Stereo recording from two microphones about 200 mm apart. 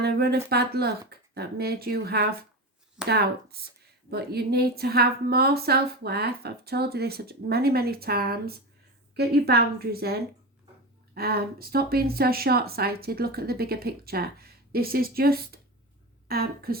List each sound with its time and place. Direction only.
0.0 s speech: 50° right (ahead or behind)